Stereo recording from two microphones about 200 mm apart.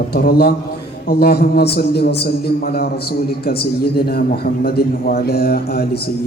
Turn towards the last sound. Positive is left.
turn(degrees=50)  # may be behind; listen again after turning